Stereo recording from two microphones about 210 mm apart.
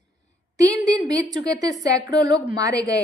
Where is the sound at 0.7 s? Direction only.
15° right (ahead or behind).